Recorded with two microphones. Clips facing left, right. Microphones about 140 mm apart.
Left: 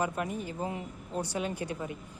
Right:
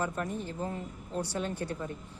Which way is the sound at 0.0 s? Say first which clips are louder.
Left 1 dB; 10° left (ahead or behind).